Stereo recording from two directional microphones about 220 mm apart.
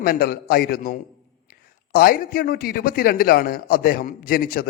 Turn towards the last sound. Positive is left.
turn(degrees=40)  # may be behind; listen again after turning